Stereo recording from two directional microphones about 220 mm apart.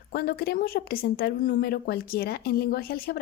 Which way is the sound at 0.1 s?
45° left (ahead or behind).